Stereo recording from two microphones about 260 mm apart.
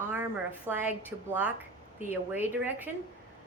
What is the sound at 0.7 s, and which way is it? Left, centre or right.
A woman's voice, centre.